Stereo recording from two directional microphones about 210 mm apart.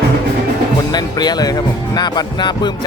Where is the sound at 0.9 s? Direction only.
20° left (ahead or behind).